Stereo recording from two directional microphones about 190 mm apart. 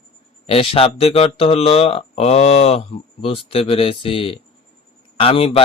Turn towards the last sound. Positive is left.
turn(degrees=30)  # may be behind; listen again after turning